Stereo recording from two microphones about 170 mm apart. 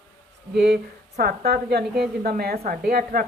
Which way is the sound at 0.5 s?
80° right.